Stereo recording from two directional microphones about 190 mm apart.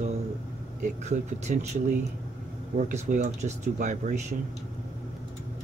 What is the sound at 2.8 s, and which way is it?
Speech, 40° right (ahead or behind).